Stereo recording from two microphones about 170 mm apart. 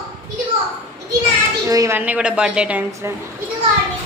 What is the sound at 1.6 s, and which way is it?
A woman's voice, 20° right (ahead or behind).